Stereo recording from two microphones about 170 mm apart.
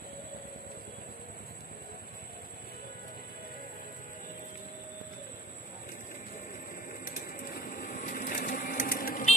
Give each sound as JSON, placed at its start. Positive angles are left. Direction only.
{"t": 6.9, "sound": "vehicle", "side_deg": 55}